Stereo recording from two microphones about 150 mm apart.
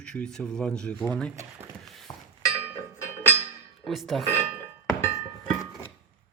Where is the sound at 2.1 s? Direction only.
25° left (ahead or behind).